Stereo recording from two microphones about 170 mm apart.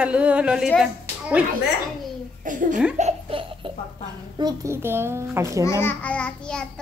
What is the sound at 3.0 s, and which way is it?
Speech, 35° right (ahead or behind).